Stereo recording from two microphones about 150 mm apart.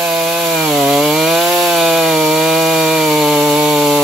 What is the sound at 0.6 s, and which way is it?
Chainsaw, centre (ahead or behind).